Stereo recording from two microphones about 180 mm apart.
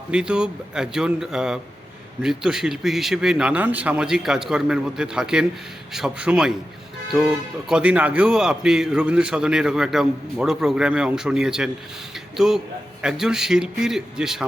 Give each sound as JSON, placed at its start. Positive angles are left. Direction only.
{"t": 0.1, "sound": "speech", "side_deg": -5}